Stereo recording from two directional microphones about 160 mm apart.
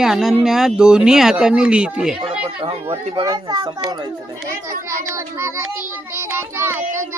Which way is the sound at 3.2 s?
25° right (ahead or behind).